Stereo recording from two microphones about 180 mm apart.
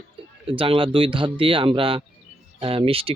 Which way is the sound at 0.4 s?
30° right (ahead or behind).